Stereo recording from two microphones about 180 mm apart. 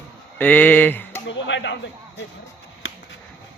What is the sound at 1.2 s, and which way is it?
Speech, 85° left.